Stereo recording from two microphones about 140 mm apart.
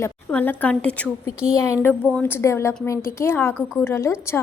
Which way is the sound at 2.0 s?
10° left (ahead or behind).